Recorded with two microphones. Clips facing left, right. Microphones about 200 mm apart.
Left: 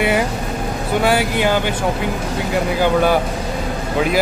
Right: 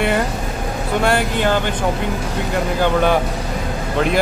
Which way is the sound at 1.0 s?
5° left (ahead or behind).